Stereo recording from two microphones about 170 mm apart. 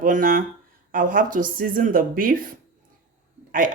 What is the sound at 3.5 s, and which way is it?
Speech, 50° right (ahead or behind).